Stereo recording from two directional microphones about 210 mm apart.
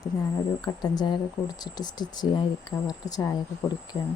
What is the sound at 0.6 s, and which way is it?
A woman's voice, 20° left (ahead or behind).